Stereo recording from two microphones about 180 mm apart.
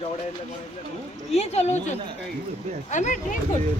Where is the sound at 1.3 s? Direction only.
35° left (ahead or behind).